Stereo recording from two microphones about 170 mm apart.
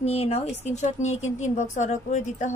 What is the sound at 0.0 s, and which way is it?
A woman's voice, 40° left (ahead or behind).